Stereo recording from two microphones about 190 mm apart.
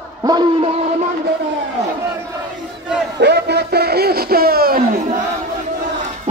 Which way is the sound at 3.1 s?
60° right (ahead or behind).